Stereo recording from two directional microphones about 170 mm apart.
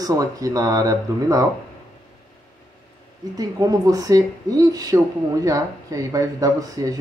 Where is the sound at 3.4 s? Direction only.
20° right (ahead or behind).